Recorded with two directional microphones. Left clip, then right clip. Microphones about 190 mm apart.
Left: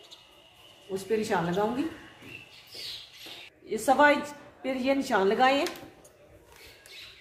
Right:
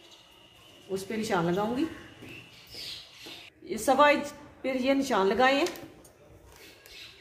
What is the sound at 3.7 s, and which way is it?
A woman's voice, 30° right (ahead or behind).